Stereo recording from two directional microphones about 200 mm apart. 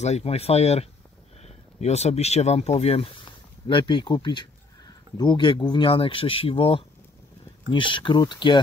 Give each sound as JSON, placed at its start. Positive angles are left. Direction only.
{"t": 0.0, "sound": "speech", "side_deg": 30}